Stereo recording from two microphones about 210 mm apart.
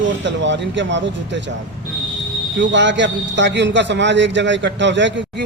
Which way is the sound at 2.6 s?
60° right (ahead or behind).